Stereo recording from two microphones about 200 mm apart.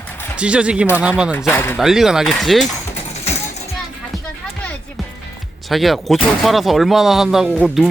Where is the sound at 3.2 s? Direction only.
35° left (ahead or behind).